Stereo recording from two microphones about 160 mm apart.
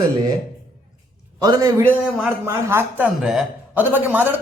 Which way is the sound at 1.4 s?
20° right (ahead or behind).